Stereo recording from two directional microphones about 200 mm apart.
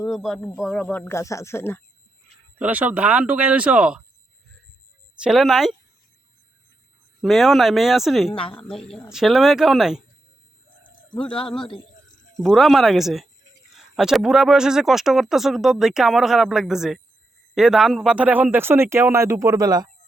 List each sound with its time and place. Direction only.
0.0 s speech: centre (ahead or behind)
2.6 s a man's voice: 5° right (ahead or behind)
5.2 s speech: centre (ahead or behind)
7.2 s speech: centre (ahead or behind)
8.4 s a woman's voice: 25° left (ahead or behind)
8.6 s speech: centre (ahead or behind)
11.4 s a man's voice: 5° left (ahead or behind); by 19.9 s 20° right (ahead or behind)